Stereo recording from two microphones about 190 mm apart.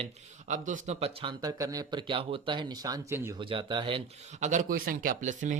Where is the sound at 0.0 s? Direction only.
40° right (ahead or behind).